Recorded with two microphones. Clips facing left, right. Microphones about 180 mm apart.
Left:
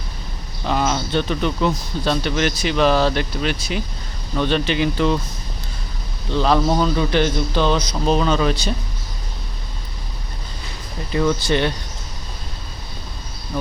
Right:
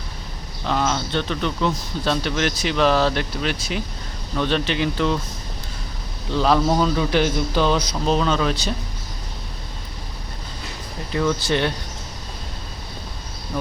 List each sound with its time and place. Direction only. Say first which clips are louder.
0.6 s speech: left 2 dB; 10° left (ahead or behind)
6.3 s speech: left 1 dB; 5° right (ahead or behind)
11.1 s speech: left 2 dB; 5° left (ahead or behind)